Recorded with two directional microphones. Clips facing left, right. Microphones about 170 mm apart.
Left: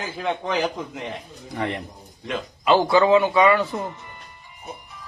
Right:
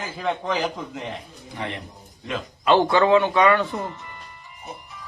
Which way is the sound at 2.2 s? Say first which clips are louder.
Even; centre (ahead or behind).